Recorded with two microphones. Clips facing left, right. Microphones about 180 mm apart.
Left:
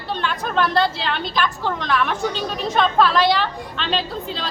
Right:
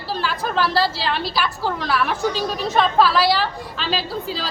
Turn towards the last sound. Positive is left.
turn(degrees=-5)  # may be behind; listen again after turning